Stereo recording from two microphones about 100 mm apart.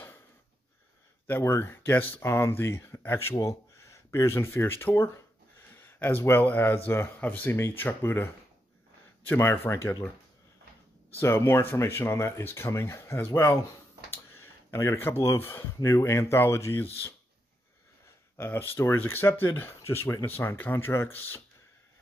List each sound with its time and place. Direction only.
1.2 s speech: 25° left (ahead or behind)
9.3 s speech: 25° left (ahead or behind)
11.1 s speech: 25° left (ahead or behind)
18.4 s speech: 20° left (ahead or behind)